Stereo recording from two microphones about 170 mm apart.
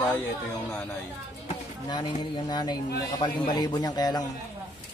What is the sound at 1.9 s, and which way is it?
Speech, 25° left (ahead or behind).